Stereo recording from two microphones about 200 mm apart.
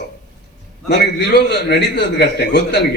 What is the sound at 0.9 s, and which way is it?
A man's voice, 55° left (ahead or behind).